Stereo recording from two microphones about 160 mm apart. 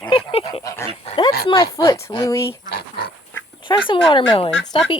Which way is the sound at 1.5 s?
25° left (ahead or behind).